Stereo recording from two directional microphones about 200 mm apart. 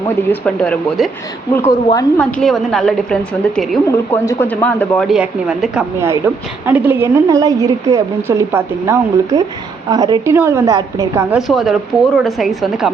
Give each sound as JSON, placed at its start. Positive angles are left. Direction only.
{"t": 0.3, "sound": "speech", "side_deg": 5}
{"t": 1.5, "sound": "a woman's voice", "side_deg": 15}
{"t": 2.1, "sound": "a woman's voice", "side_deg": 5}
{"t": 11.3, "sound": "speech", "side_deg": 0}